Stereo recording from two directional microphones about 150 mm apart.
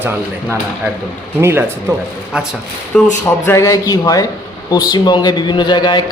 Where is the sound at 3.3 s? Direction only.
20° left (ahead or behind).